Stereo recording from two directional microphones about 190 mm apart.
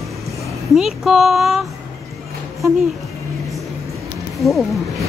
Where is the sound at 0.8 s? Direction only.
Centre (ahead or behind).